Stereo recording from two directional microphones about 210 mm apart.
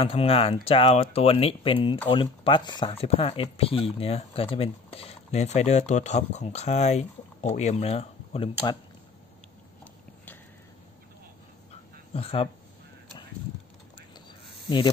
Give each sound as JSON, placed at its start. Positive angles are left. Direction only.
{"t": 0.0, "sound": "speech", "side_deg": 25}
{"t": 12.1, "sound": "speech", "side_deg": 30}